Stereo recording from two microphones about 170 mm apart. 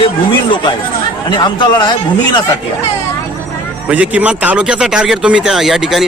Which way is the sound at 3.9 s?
10° right (ahead or behind).